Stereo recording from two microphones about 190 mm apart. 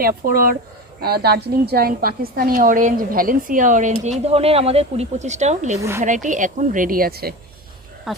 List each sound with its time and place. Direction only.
0.0 s a woman's voice: 50° right (ahead or behind)
8.1 s speech: centre (ahead or behind)